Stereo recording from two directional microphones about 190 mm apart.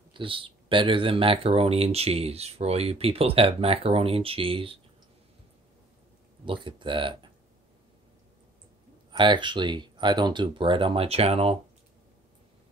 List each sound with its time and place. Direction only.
0.1 s speech: 25° right (ahead or behind)
6.4 s speech: 25° right (ahead or behind)
9.1 s speech: 25° right (ahead or behind)